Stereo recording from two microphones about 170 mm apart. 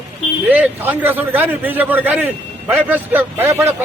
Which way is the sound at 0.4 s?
10° right (ahead or behind).